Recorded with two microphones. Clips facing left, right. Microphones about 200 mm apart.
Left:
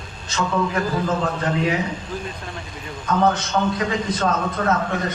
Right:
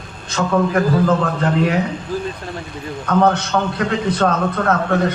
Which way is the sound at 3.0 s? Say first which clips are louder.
Right 4 dB; 60° right (ahead or behind).